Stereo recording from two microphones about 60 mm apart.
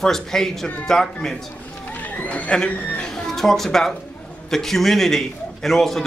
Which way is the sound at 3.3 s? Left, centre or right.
Centre.